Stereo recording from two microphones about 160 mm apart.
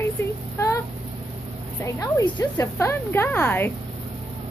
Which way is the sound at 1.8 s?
20° left (ahead or behind).